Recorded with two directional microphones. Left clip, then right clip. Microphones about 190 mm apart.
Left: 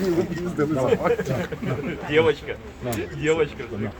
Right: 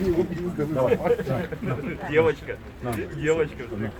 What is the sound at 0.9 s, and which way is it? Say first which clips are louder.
Speech: left 1 dB; 30° left (ahead or behind).